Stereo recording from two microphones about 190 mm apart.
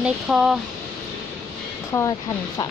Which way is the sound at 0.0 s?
5° right (ahead or behind).